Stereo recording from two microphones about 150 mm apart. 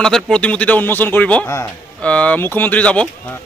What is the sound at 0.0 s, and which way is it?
A man's voice, 5° left (ahead or behind).